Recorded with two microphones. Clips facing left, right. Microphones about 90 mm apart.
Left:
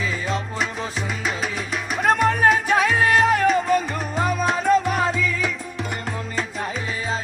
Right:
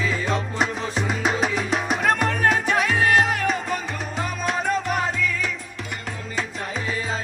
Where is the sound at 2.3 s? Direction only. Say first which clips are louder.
Left 3 dB; 20° left (ahead or behind).